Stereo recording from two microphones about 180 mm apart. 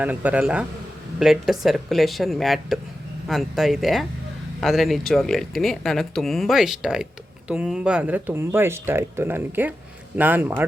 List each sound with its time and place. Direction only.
0.0 s a man's voice: 10° right (ahead or behind)